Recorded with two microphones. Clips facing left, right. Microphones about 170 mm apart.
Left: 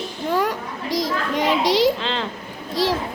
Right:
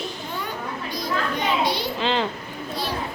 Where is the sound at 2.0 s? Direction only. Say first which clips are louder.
Right 3 dB; 5° right (ahead or behind).